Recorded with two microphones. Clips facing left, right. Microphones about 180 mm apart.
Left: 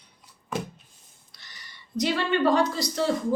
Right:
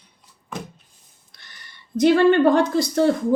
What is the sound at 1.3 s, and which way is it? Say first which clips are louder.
A woman's voice: right 1 dB; 55° right (ahead or behind).